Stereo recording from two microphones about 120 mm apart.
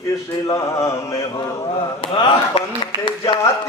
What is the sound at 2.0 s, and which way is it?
Speech, 45° left (ahead or behind).